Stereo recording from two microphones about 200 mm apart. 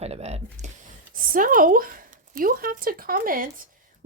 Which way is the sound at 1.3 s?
45° right (ahead or behind).